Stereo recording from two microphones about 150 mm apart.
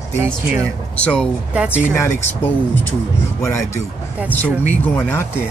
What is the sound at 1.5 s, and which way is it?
Speech, 10° right (ahead or behind).